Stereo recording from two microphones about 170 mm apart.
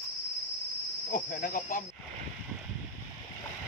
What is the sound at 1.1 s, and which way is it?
Cricket, 60° left (ahead or behind).